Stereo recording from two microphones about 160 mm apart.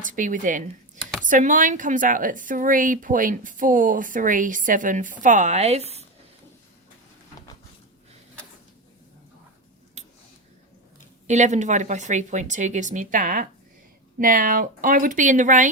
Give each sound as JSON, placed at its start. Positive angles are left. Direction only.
{"t": 0.0, "sound": "a woman's voice", "side_deg": -55}
{"t": 10.0, "sound": "a sound", "side_deg": -45}
{"t": 11.3, "sound": "a woman's voice", "side_deg": -50}